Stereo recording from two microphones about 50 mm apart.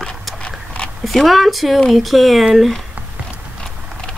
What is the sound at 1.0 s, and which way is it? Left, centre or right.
A woman's voice, centre.